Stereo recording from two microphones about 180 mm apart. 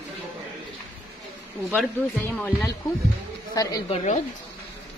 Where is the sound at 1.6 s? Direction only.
10° left (ahead or behind).